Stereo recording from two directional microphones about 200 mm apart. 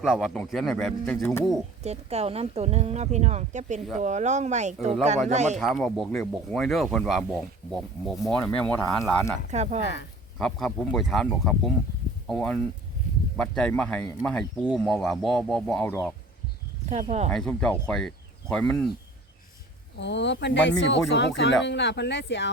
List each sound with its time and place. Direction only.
0.0 s speech: 5° right (ahead or behind)
1.8 s speech: 35° right (ahead or behind)
5.5 s speech: centre (ahead or behind)
9.5 s speech: 35° right (ahead or behind)
9.8 s speech: 60° left (ahead or behind)
10.3 s speech: 5° left (ahead or behind)
16.8 s speech: 35° right (ahead or behind)
17.3 s speech: 5° left (ahead or behind)
20.0 s speech: 60° left (ahead or behind)